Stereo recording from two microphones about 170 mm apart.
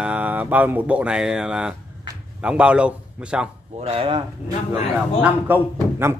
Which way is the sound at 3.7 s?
35° right (ahead or behind).